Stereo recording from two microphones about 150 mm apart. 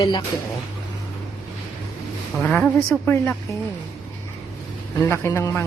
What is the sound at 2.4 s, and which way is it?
Speech, 10° left (ahead or behind).